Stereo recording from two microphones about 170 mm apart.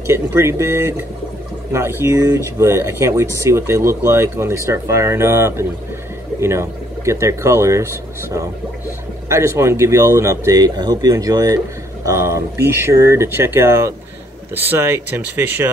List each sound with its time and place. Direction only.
0.0 s speech: 15° right (ahead or behind)